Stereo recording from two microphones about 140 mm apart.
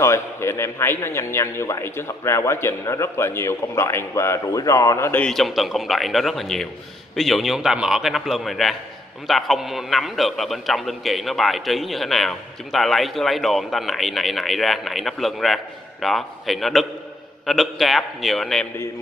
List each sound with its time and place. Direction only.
0.0 s a man's voice: 20° left (ahead or behind)
5.2 s a man's voice: centre (ahead or behind)